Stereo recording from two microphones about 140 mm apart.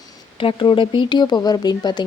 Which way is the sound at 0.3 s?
40° left (ahead or behind).